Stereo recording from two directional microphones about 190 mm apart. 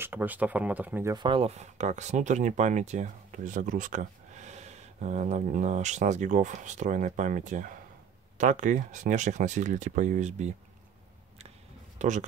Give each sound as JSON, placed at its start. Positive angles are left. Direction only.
{"t": 0.0, "sound": "speech", "side_deg": -10}
{"t": 1.1, "sound": "speech", "side_deg": -25}
{"t": 12.0, "sound": "speech", "side_deg": -40}